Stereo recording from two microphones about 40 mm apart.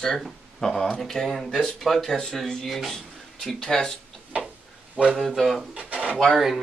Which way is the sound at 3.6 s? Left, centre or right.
Centre.